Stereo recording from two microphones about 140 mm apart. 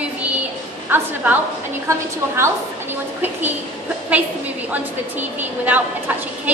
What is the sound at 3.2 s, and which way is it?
Speech, 15° right (ahead or behind).